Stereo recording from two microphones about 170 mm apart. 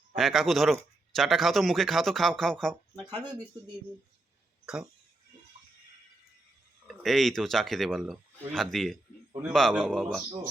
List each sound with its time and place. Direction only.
0.2 s speech: centre (ahead or behind)
4.6 s speech: 5° right (ahead or behind)
6.8 s speech: centre (ahead or behind)